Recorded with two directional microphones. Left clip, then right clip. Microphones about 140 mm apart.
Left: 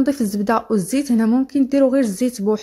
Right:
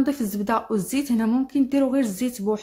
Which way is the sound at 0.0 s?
35° left (ahead or behind).